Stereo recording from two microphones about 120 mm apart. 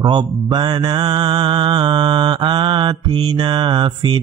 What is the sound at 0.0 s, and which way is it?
Mantra, 35° right (ahead or behind).